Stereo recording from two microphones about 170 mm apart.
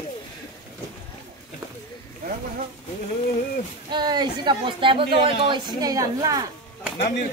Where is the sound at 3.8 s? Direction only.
25° right (ahead or behind).